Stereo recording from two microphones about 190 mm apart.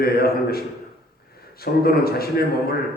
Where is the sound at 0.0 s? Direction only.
55° left (ahead or behind).